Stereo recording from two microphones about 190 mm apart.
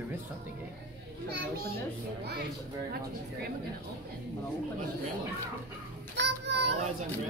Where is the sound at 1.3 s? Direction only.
60° right (ahead or behind).